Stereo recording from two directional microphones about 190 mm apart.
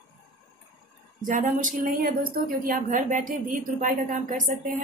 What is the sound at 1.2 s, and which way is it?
Speech, 45° right (ahead or behind).